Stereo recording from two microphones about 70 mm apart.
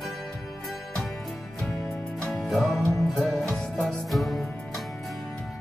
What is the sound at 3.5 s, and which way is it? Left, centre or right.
Music, centre.